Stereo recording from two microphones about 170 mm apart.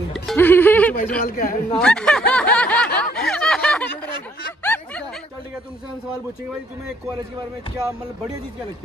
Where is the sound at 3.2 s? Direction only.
5° left (ahead or behind).